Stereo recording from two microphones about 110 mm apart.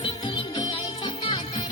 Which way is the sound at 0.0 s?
45° left (ahead or behind).